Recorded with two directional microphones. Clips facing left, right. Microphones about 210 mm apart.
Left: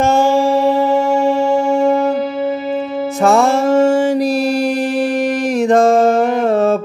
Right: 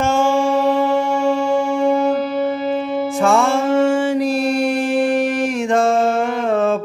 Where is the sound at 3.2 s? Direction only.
40° left (ahead or behind).